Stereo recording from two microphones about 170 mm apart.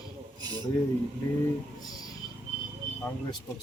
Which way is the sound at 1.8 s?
20° left (ahead or behind).